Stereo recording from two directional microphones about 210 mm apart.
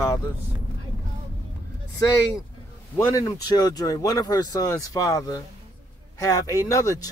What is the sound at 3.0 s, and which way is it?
Speech, 15° left (ahead or behind).